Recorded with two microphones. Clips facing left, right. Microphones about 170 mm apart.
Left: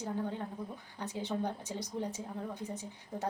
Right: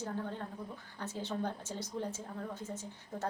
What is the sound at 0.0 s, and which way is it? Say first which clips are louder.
A woman's voice: left 2 dB; 15° left (ahead or behind).